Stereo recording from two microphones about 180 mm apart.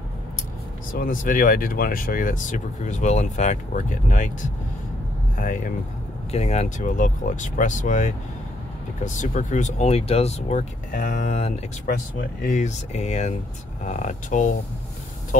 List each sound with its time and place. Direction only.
0.9 s speech: 50° left (ahead or behind)
5.4 s speech: 45° left (ahead or behind)